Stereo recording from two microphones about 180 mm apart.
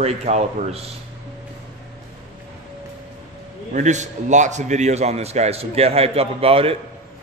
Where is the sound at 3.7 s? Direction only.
40° right (ahead or behind).